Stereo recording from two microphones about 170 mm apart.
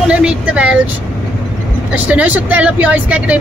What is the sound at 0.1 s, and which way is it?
Speech, 5° right (ahead or behind).